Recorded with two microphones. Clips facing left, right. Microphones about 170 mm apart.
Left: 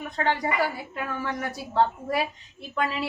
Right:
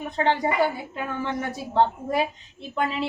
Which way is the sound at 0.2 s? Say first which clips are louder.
Right 3 dB; 25° right (ahead or behind).